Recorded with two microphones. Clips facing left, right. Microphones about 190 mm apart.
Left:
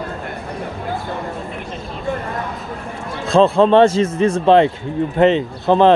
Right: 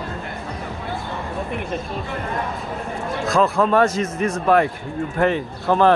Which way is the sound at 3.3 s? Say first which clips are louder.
Left 6 dB; 25° left (ahead or behind).